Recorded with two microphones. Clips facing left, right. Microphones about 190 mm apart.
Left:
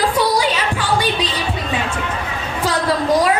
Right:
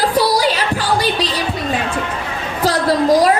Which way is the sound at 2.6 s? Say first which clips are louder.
Right 4 dB; 40° right (ahead or behind).